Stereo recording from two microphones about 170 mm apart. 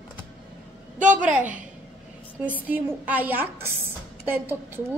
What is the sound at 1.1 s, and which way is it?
A woman's voice, 5° right (ahead or behind).